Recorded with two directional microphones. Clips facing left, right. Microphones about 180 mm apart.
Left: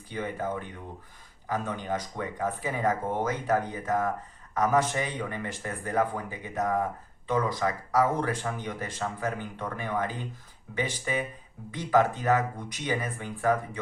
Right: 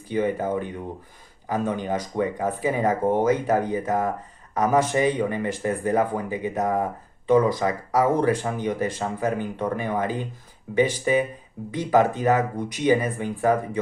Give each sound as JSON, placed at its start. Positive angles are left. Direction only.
{"t": 0.1, "sound": "speech", "side_deg": -20}